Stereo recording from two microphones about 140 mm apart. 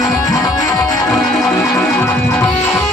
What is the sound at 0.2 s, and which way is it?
Music, 25° left (ahead or behind).